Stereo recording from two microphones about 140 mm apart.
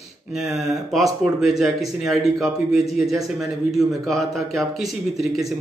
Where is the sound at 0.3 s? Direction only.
Centre (ahead or behind).